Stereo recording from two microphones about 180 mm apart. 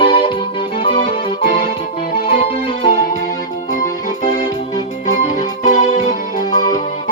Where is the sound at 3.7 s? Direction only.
45° left (ahead or behind).